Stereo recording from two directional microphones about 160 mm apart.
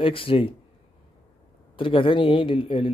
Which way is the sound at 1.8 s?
30° left (ahead or behind).